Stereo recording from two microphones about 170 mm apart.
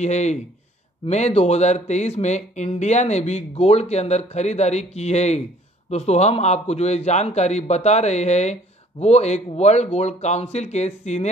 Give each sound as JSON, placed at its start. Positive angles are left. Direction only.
{"t": 0.0, "sound": "speech", "side_deg": 40}